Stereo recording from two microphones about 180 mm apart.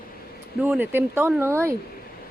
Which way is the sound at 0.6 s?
10° right (ahead or behind).